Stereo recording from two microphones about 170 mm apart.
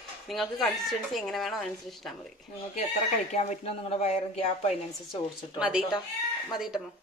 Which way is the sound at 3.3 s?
40° left (ahead or behind).